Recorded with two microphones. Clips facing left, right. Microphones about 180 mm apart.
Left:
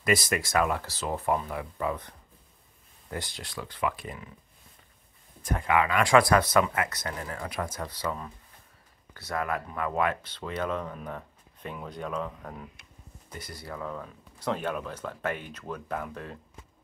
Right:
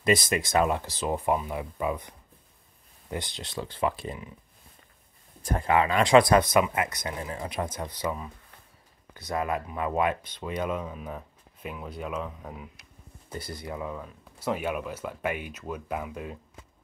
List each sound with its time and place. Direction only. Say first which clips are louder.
0.0 s speech: right 2 dB; 20° right (ahead or behind)
5.4 s speech: right 2 dB; 30° right (ahead or behind); by 12.6 s 5° right (ahead or behind)
13.3 s speech: right 5 dB; 30° right (ahead or behind)
13.6 s speech: even; 15° right (ahead or behind)
13.9 s speech: even; 5° right (ahead or behind)